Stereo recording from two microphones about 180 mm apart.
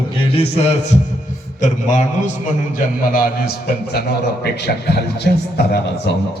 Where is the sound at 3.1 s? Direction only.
50° left (ahead or behind).